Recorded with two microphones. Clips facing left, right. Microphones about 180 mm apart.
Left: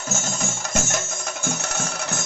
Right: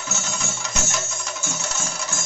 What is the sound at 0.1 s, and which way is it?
Music, 45° left (ahead or behind).